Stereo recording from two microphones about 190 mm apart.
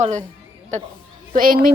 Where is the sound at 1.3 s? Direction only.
50° right (ahead or behind).